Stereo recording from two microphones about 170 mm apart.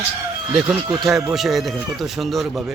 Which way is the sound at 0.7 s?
25° right (ahead or behind).